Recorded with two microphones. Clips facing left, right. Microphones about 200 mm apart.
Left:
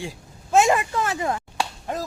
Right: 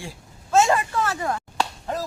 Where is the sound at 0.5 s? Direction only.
15° left (ahead or behind).